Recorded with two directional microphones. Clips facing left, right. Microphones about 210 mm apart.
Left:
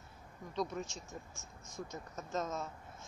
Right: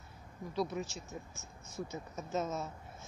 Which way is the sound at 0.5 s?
5° right (ahead or behind).